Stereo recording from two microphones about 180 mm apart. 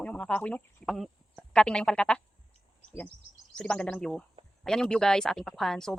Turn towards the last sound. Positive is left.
turn(degrees=0)  # may be behind; listen again after turning